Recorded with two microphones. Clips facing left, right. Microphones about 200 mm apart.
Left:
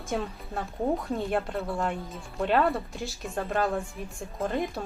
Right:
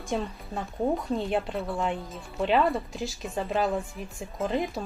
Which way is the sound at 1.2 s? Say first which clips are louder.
Even; centre (ahead or behind).